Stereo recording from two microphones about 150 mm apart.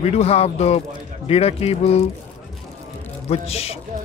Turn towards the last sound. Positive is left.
turn(degrees=45)  # may be behind; listen again after turning